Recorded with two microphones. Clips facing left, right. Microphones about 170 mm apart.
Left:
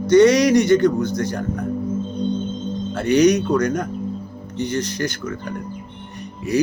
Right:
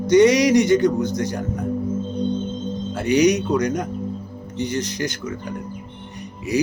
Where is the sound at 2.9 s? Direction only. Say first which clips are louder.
Left 2 dB; 15° right (ahead or behind).